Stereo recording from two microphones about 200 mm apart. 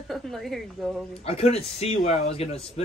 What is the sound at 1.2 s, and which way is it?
A man's voice, 30° left (ahead or behind).